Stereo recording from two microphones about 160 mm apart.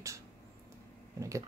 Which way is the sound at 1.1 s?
20° right (ahead or behind).